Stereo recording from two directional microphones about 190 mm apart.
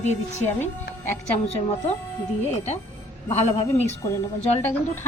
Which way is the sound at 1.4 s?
35° left (ahead or behind).